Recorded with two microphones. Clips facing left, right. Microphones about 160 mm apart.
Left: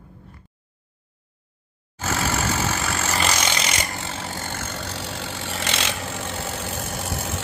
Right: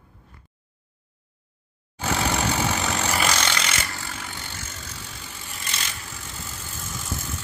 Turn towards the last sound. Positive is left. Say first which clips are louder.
# left 5 dB
turn(degrees=65)  # may be behind; listen again after turning